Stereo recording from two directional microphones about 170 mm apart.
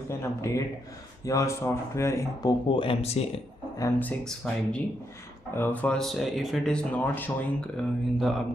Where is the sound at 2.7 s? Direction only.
30° left (ahead or behind).